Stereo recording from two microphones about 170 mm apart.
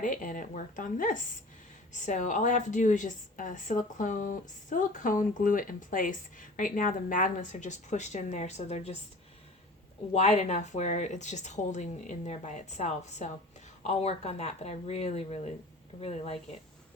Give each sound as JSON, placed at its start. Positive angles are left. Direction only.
{"t": 0.0, "sound": "a woman's voice", "side_deg": 50}
{"t": 10.1, "sound": "a woman's voice", "side_deg": 40}